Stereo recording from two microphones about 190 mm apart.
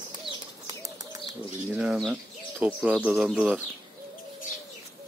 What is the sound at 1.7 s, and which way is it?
Speech, 5° right (ahead or behind).